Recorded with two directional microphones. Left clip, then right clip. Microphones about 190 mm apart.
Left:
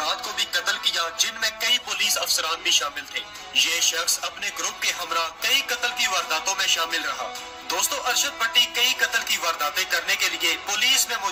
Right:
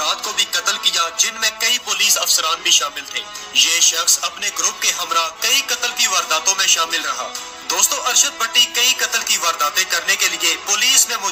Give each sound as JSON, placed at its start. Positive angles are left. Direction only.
{"t": 0.0, "sound": "music", "side_deg": -30}
{"t": 7.7, "sound": "a man's voice", "side_deg": -30}